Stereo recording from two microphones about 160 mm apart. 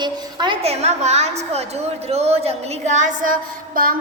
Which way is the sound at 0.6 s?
40° right (ahead or behind).